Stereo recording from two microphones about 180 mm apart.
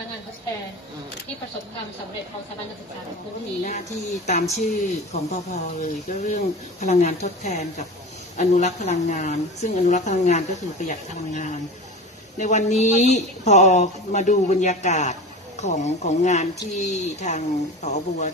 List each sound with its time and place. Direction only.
3.6 s speech: 40° left (ahead or behind)